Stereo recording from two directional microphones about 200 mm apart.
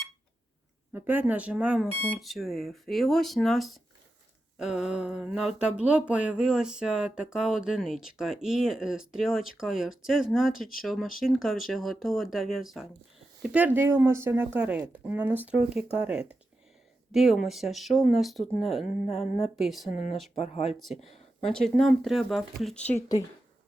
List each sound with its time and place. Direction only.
0.9 s speech: 10° right (ahead or behind)
19.0 s speech: 30° left (ahead or behind)
19.5 s speech: centre (ahead or behind)
19.9 s speech: 40° left (ahead or behind)
20.7 s speech: centre (ahead or behind)